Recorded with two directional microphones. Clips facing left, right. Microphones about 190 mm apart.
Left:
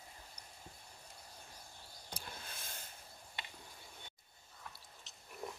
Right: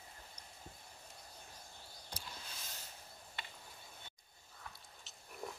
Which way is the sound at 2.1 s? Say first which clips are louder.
Left 2 dB; 55° left (ahead or behind).